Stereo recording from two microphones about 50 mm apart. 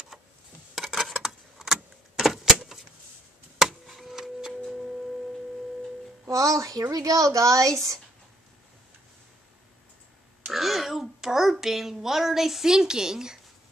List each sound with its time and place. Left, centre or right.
0.1 s a sound: centre
6.2 s speech: right
10.5 s a child's voice: centre